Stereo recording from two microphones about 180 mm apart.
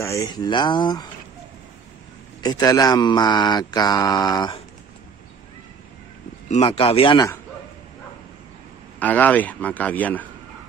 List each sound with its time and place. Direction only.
0.0 s speech: 15° left (ahead or behind)
2.4 s speech: 20° left (ahead or behind)
6.5 s speech: 30° left (ahead or behind)
9.0 s speech: 10° left (ahead or behind)